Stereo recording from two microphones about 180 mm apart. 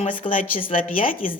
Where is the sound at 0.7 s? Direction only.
50° left (ahead or behind).